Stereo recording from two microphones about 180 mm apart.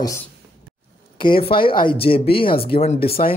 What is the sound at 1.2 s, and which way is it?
A man's voice, 30° left (ahead or behind).